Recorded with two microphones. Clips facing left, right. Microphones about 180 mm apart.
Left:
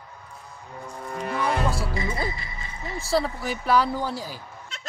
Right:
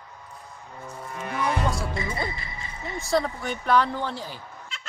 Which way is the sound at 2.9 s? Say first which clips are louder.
Even; centre (ahead or behind).